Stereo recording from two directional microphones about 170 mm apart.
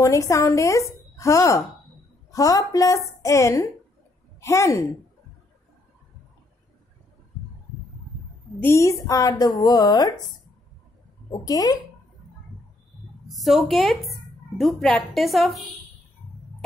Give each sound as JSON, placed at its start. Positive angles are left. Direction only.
{"t": 0.0, "sound": "a woman's voice", "side_deg": 15}
{"t": 8.5, "sound": "a woman's voice", "side_deg": 15}
{"t": 11.3, "sound": "a woman's voice", "side_deg": 20}
{"t": 13.3, "sound": "a woman's voice", "side_deg": 0}